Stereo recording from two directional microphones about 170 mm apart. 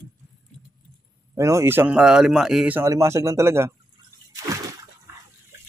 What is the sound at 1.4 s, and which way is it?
Speech, 15° right (ahead or behind).